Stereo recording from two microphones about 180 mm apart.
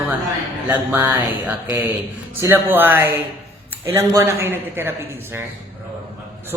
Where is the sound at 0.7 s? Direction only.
10° right (ahead or behind).